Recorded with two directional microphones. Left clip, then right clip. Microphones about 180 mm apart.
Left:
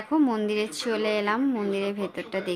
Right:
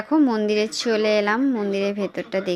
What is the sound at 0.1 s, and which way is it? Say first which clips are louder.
A woman's voice: right 5 dB; 20° right (ahead or behind).